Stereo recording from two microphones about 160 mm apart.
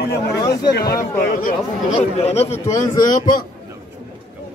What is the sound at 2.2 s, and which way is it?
Speech, 40° left (ahead or behind).